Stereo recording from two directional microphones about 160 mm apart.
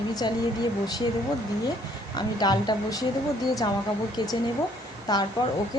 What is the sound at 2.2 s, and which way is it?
Speech, 25° left (ahead or behind).